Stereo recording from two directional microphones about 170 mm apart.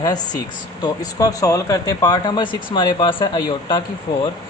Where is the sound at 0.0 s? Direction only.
25° left (ahead or behind).